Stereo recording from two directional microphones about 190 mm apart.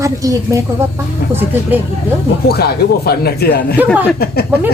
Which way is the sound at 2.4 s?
55° left (ahead or behind).